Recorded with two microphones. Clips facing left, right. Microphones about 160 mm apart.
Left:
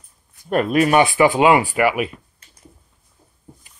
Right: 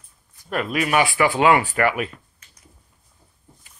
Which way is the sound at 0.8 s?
35° left (ahead or behind).